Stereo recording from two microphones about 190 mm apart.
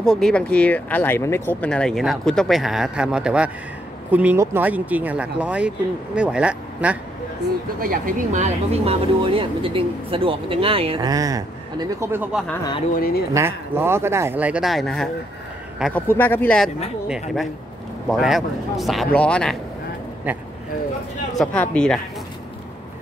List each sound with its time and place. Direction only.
0.0 s speech: 5° left (ahead or behind)
7.8 s speech: 50° right (ahead or behind); by 12.4 s 5° right (ahead or behind)
12.9 s speech: 50° left (ahead or behind)
13.3 s speech: 15° right (ahead or behind); by 19.5 s 5° left (ahead or behind)
20.3 s speech: 10° right (ahead or behind)
21.4 s speech: 5° left (ahead or behind)